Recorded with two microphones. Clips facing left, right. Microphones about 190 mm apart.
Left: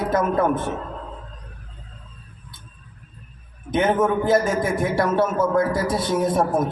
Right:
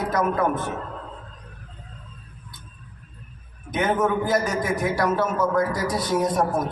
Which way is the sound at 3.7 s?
25° left (ahead or behind).